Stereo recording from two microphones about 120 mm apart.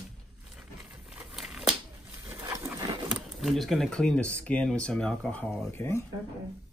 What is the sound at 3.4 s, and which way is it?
Speech, centre (ahead or behind).